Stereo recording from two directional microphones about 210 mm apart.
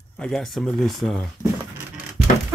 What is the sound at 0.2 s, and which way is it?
Speech, centre (ahead or behind).